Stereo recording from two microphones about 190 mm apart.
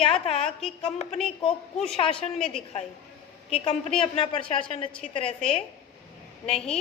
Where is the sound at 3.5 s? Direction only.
30° left (ahead or behind).